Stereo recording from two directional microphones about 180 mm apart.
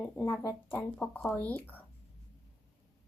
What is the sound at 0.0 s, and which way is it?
Speech, 15° left (ahead or behind).